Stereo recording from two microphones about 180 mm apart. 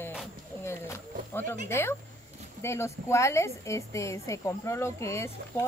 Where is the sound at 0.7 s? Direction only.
15° left (ahead or behind).